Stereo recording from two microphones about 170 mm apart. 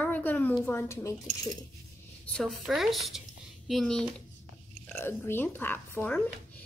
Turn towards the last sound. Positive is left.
turn(degrees=15)  # may be behind; listen again after turning